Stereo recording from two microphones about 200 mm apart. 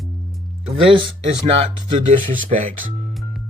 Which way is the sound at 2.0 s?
35° right (ahead or behind).